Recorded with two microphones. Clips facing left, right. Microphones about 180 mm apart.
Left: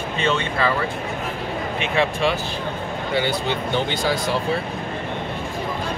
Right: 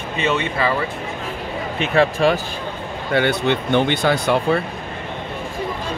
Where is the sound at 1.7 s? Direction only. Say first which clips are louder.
Right 5 dB; 40° right (ahead or behind).